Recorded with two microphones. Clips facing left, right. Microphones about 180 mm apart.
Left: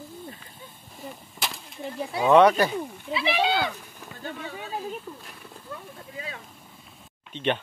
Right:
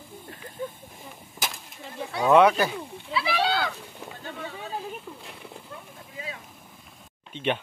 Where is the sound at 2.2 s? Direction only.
Centre (ahead or behind).